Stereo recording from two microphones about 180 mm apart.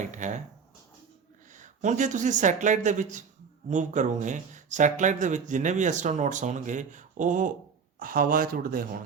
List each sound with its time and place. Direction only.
0.0 s speech: 45° right (ahead or behind)
1.5 s speech: 45° right (ahead or behind)